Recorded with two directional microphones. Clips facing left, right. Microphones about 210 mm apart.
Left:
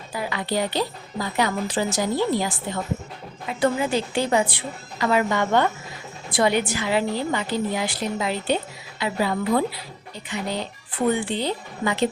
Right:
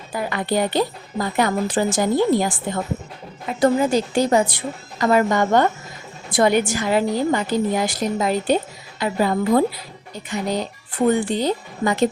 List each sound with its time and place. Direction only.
0.1 s a woman's voice: 50° right (ahead or behind)